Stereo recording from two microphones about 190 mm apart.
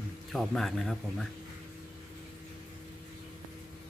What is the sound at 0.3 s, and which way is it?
A man's voice, centre (ahead or behind).